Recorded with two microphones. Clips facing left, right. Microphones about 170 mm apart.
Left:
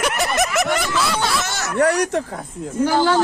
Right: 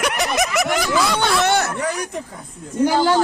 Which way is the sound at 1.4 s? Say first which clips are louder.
Right 9 dB; 60° right (ahead or behind).